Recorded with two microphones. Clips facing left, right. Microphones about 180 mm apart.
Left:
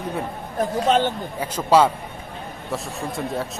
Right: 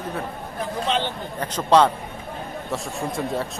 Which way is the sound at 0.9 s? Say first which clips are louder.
Left 6 dB; 45° left (ahead or behind).